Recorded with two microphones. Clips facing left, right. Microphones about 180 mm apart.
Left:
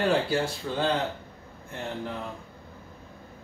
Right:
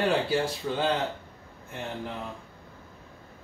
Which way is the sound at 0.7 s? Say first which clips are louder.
Right 1 dB; 5° right (ahead or behind).